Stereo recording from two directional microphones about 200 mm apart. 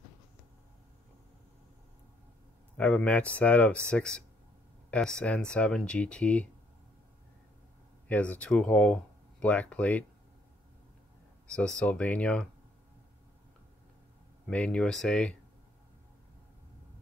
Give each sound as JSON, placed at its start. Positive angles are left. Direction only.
{"t": 2.8, "sound": "speech", "side_deg": 5}
{"t": 8.1, "sound": "speech", "side_deg": 5}
{"t": 11.5, "sound": "speech", "side_deg": 5}
{"t": 14.5, "sound": "speech", "side_deg": 5}